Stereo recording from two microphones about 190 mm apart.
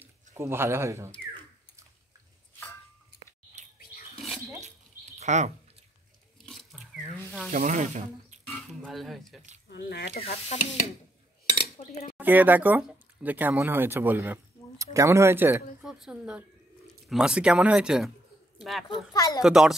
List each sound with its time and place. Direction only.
0.0 s speech: 10° right (ahead or behind)
3.7 s a sound: 50° left (ahead or behind)
5.2 s speech: 35° right (ahead or behind)
6.4 s pig: centre (ahead or behind)
7.2 s snake: 10° left (ahead or behind)
7.5 s snake: 40° right (ahead or behind)
8.5 s speech: centre (ahead or behind)
9.7 s speech: 60° left (ahead or behind)
10.2 s speech: 35° left (ahead or behind)
11.7 s cutlery: 35° left (ahead or behind)
12.2 s speech: 10° right (ahead or behind)
19.1 s speech: 20° left (ahead or behind)
19.4 s speech: 5° right (ahead or behind)